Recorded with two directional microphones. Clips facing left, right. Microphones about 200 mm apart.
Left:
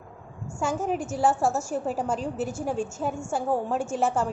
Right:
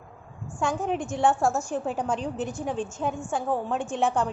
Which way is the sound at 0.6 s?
5° left (ahead or behind).